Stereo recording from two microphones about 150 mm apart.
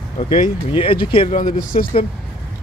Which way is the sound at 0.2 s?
35° left (ahead or behind).